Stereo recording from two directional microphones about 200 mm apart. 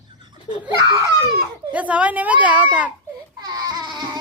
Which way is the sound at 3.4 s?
20° right (ahead or behind).